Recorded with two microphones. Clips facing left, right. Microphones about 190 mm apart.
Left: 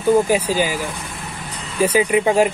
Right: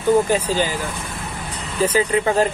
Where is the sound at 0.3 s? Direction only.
10° left (ahead or behind).